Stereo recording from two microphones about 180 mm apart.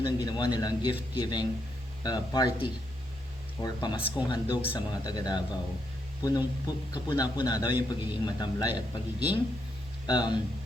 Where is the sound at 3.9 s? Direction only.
10° right (ahead or behind).